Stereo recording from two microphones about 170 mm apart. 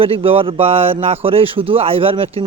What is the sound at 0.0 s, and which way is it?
A woman's voice, 35° right (ahead or behind).